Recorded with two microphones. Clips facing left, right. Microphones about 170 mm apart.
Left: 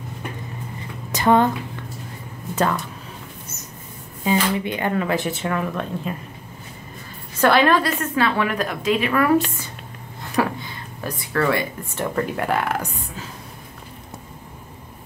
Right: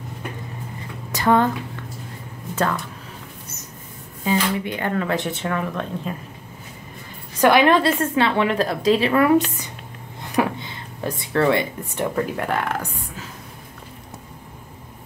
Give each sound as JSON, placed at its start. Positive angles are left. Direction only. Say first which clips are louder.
{"t": 1.1, "sound": "speech", "louder": "left 1 dB", "side_deg": 20}
{"t": 4.2, "sound": "speech", "louder": "left 1 dB", "side_deg": 20}
{"t": 7.3, "sound": "a woman's voice", "louder": "right 1 dB", "side_deg": -15}
{"t": 10.3, "sound": "a sound", "louder": "right 1 dB", "side_deg": -25}
{"t": 12.4, "sound": "speech", "louder": "left 1 dB", "side_deg": 5}